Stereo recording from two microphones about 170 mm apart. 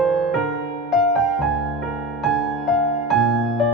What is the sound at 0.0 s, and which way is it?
Music, centre (ahead or behind).